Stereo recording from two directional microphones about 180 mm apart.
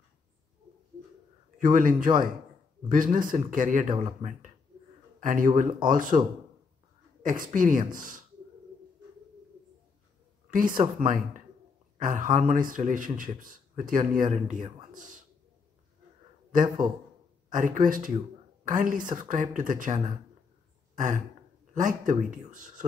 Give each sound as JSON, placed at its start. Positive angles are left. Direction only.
{"t": 1.6, "sound": "speech", "side_deg": -50}
{"t": 5.2, "sound": "speech", "side_deg": -50}
{"t": 7.2, "sound": "speech", "side_deg": -50}
{"t": 10.5, "sound": "a man's voice", "side_deg": -50}
{"t": 16.6, "sound": "speech", "side_deg": -25}
{"t": 17.5, "sound": "speech", "side_deg": -45}
{"t": 21.7, "sound": "speech", "side_deg": -45}